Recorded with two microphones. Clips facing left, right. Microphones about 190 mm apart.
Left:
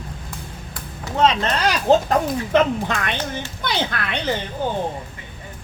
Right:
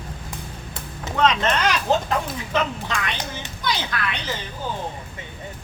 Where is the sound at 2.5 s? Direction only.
55° left (ahead or behind).